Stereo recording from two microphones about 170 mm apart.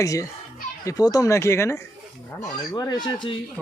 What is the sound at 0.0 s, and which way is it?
Speech, 20° left (ahead or behind).